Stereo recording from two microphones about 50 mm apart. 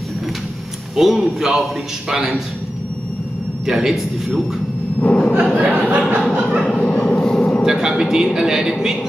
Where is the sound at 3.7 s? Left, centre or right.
Centre.